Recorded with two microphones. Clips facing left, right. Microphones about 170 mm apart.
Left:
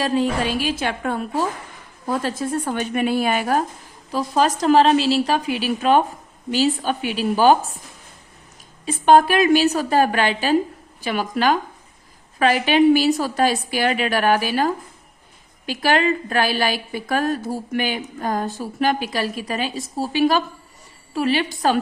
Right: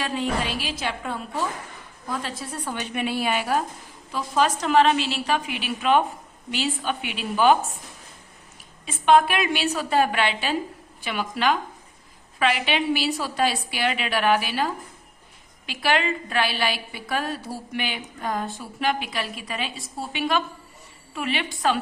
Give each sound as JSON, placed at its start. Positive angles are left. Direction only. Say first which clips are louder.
{"t": 0.0, "sound": "a woman's voice", "louder": "left 6 dB", "side_deg": 40}
{"t": 8.9, "sound": "a woman's voice", "louder": "left 4 dB", "side_deg": 40}